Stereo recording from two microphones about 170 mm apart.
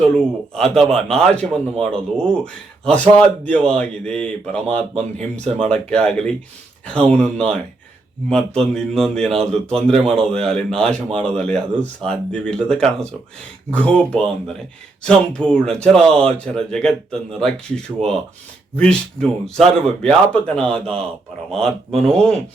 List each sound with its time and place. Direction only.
0.0 s a man's voice: 5° left (ahead or behind)